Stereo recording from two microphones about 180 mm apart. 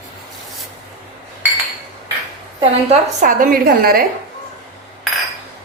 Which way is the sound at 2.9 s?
50° right (ahead or behind).